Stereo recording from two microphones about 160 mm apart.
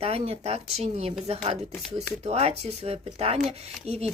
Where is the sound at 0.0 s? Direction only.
40° right (ahead or behind).